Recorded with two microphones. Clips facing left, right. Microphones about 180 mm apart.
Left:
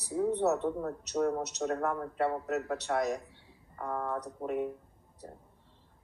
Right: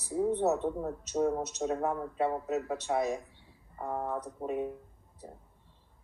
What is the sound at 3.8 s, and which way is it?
Speech, 25° right (ahead or behind).